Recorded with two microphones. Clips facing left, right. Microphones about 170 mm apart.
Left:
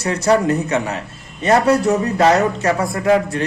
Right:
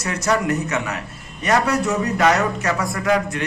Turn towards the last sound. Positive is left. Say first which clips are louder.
# left 4 dB
turn(degrees=30)  # may be behind; listen again after turning